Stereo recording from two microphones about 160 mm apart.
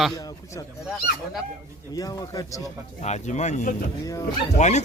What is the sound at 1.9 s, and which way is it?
Speech, 25° left (ahead or behind).